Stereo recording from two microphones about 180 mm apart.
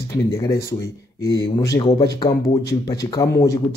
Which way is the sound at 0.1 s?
15° left (ahead or behind).